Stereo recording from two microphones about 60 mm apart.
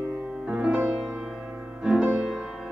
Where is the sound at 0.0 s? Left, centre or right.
Right.